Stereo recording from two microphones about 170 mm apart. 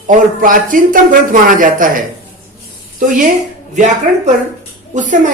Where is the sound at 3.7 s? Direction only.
45° right (ahead or behind).